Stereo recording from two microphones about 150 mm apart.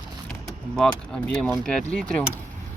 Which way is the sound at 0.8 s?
5° left (ahead or behind).